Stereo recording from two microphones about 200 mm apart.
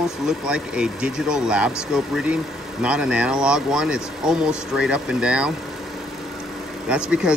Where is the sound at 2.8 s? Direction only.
5° right (ahead or behind).